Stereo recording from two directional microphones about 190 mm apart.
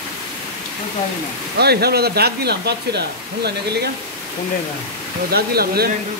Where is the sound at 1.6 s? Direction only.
55° right (ahead or behind).